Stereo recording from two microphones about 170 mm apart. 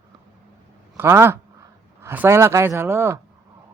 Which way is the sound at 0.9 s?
15° right (ahead or behind).